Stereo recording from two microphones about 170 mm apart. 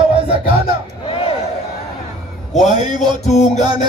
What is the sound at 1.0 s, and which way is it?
Crowd, 35° left (ahead or behind).